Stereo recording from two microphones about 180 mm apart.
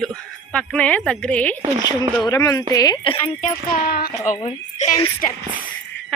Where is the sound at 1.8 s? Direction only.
25° left (ahead or behind).